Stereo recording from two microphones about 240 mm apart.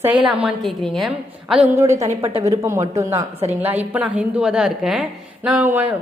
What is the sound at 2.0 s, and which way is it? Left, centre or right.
Speech, right.